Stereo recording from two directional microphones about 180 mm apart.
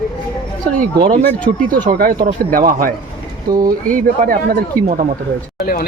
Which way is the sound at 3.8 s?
50° right (ahead or behind).